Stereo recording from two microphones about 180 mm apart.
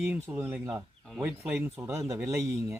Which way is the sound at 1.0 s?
Centre (ahead or behind).